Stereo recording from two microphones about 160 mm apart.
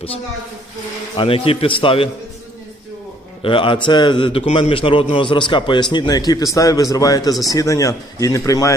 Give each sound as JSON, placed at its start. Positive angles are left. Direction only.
{"t": 1.1, "sound": "a man's voice", "side_deg": 35}
{"t": 3.4, "sound": "a man's voice", "side_deg": 30}